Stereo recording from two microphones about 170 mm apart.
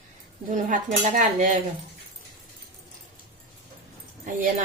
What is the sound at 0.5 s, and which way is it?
Speech, 50° right (ahead or behind).